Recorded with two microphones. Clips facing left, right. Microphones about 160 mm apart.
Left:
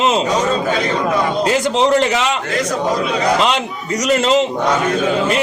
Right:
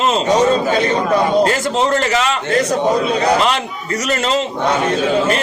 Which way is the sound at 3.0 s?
30° right (ahead or behind).